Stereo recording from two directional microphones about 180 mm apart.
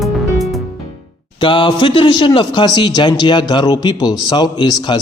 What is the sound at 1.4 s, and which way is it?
A man's voice, 25° left (ahead or behind).